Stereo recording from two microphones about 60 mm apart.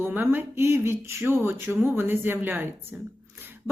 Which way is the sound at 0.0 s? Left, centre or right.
Right.